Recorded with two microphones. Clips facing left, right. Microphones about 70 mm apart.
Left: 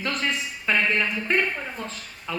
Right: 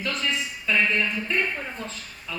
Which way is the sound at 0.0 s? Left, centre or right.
Left.